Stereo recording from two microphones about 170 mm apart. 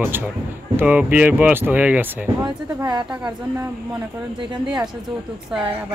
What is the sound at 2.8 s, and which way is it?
Speech, 25° right (ahead or behind).